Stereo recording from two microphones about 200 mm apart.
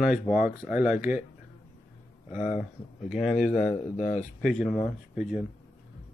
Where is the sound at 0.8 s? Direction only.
40° left (ahead or behind).